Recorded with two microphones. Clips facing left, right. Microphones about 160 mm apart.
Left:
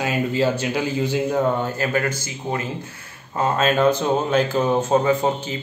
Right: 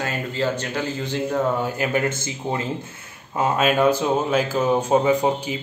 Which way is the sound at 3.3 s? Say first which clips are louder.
Even; 10° right (ahead or behind).